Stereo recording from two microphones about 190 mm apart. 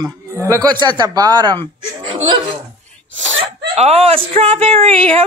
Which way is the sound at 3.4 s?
35° right (ahead or behind).